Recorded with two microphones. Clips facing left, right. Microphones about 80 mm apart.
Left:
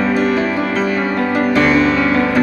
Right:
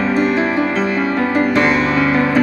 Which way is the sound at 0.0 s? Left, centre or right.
Right.